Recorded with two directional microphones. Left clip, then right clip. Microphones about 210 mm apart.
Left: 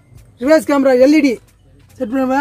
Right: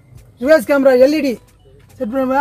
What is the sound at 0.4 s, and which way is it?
Speech, 40° left (ahead or behind).